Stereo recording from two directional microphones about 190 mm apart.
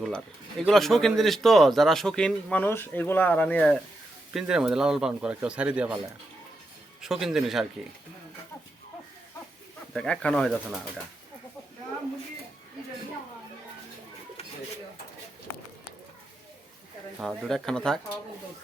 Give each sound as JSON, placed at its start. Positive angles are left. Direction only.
{"t": 0.6, "sound": "a man's voice", "side_deg": 0}
{"t": 4.3, "sound": "a man's voice", "side_deg": -5}
{"t": 7.0, "sound": "a man's voice", "side_deg": 0}
{"t": 9.9, "sound": "a man's voice", "side_deg": 5}
{"t": 17.2, "sound": "a man's voice", "side_deg": 0}